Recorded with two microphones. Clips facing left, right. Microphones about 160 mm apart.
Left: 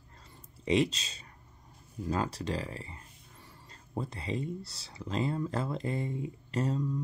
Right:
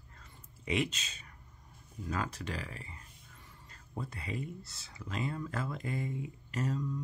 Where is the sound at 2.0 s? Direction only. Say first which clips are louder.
Left 5 dB; 30° left (ahead or behind).